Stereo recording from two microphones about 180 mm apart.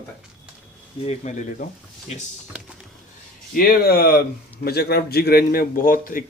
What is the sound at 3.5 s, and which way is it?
A man's voice, 55° left (ahead or behind).